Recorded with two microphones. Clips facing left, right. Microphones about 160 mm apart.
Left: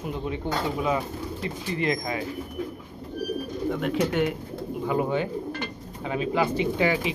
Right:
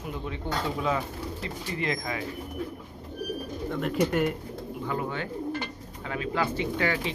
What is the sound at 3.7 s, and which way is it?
Speech, centre (ahead or behind).